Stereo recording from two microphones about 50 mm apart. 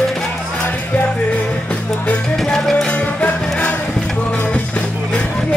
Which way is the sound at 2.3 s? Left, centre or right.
Centre.